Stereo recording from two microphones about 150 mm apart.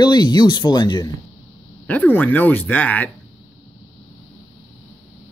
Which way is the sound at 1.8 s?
10° left (ahead or behind).